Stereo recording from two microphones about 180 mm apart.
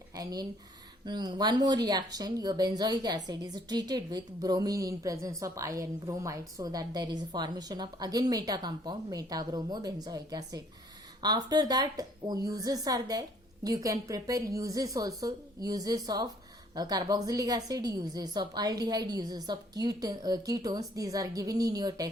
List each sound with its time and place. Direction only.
0.2 s a woman's voice: 20° right (ahead or behind)